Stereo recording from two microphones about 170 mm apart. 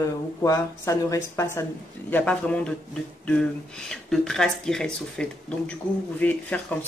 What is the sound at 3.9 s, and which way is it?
Speech, 5° left (ahead or behind).